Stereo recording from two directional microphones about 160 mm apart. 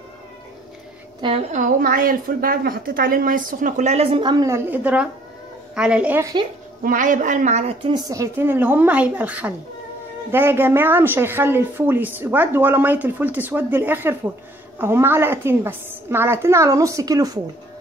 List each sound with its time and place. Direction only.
1.5 s a woman's voice: 55° right (ahead or behind); by 6.2 s 10° right (ahead or behind)
6.8 s speech: 55° right (ahead or behind)
7.9 s a woman's voice: 20° right (ahead or behind)